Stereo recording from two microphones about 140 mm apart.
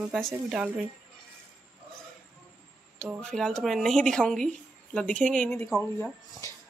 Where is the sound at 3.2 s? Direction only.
5° left (ahead or behind).